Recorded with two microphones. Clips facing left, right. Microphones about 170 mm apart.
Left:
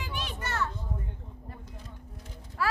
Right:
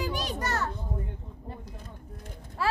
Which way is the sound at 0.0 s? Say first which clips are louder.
Right 6 dB; 40° right (ahead or behind).